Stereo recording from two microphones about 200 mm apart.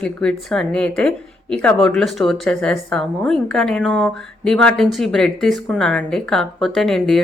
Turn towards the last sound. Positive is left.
turn(degrees=0)  # may be behind; listen again after turning